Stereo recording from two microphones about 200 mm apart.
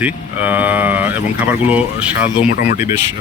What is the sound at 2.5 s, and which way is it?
Speech, 45° left (ahead or behind).